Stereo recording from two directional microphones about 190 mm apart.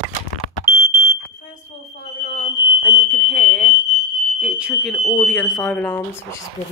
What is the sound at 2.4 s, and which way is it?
Smoke detector, 15° left (ahead or behind).